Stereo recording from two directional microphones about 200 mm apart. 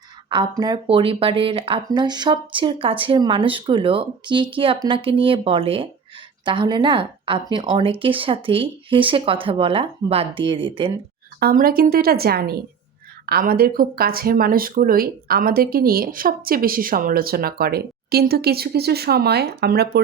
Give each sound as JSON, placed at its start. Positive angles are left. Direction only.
{"t": 0.3, "sound": "speech", "side_deg": -20}
{"t": 11.3, "sound": "speech", "side_deg": -50}